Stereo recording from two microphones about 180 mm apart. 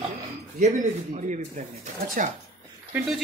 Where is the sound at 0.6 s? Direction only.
40° right (ahead or behind).